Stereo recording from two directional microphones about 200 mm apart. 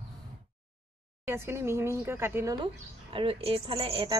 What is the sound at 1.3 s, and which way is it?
A woman's voice, 15° right (ahead or behind).